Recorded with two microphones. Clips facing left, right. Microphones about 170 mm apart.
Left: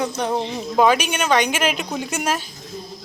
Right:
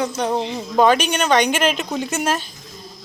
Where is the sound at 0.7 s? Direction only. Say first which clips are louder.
Right 2 dB; 5° left (ahead or behind).